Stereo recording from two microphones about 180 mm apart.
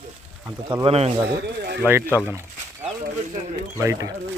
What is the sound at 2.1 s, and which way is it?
Speech, 10° right (ahead or behind).